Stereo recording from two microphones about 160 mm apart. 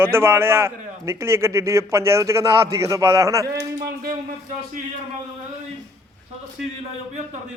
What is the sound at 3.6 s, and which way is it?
Speech, 75° right (ahead or behind).